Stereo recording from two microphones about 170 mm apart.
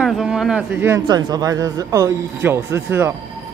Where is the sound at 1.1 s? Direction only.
25° right (ahead or behind).